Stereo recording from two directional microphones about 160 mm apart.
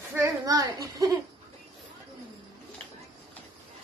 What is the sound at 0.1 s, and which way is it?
A child's voice, 20° right (ahead or behind).